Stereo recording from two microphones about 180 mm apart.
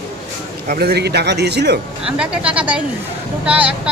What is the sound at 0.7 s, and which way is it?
A man's voice, 60° right (ahead or behind).